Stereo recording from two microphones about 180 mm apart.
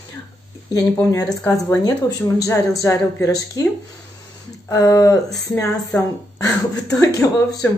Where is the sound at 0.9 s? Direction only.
15° left (ahead or behind).